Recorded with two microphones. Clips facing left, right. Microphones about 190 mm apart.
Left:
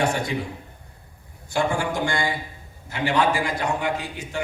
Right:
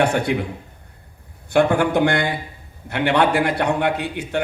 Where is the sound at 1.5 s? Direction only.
60° right (ahead or behind).